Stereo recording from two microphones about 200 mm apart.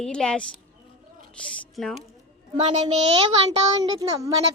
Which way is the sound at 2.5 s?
30° right (ahead or behind).